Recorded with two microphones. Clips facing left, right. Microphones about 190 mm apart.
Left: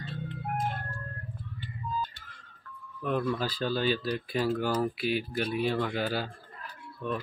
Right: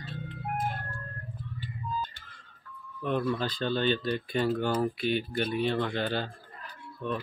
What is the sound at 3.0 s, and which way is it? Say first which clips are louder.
Speech: even; centre (ahead or behind).